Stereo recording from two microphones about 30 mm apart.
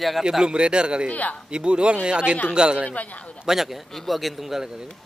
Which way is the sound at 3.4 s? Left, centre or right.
Centre.